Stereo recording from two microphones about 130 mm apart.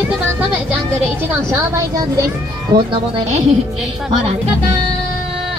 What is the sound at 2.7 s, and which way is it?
Speech, 35° right (ahead or behind).